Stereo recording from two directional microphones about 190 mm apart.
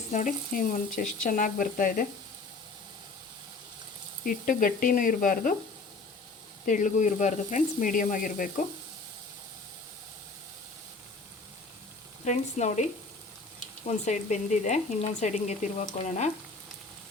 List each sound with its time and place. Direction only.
0.1 s speech: 40° left (ahead or behind)
4.3 s speech: 45° left (ahead or behind)
6.7 s speech: 40° left (ahead or behind)
12.2 s speech: 40° left (ahead or behind)
13.8 s speech: 40° left (ahead or behind)